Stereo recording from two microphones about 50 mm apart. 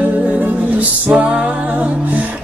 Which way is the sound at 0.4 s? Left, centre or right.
Right.